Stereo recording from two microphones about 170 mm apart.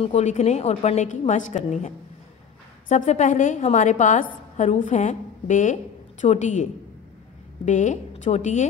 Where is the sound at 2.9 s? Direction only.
45° left (ahead or behind).